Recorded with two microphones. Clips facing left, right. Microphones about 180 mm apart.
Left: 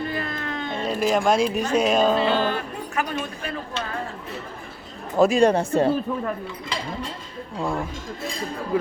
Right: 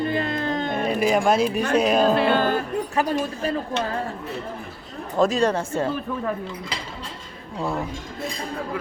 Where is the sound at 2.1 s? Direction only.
55° right (ahead or behind); by 3.5 s 35° right (ahead or behind).